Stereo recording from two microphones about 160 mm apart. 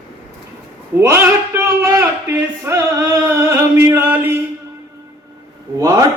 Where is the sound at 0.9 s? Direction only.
15° right (ahead or behind).